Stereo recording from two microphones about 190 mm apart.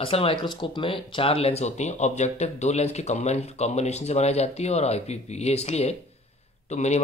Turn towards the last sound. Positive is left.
turn(degrees=35)  # may be behind; listen again after turning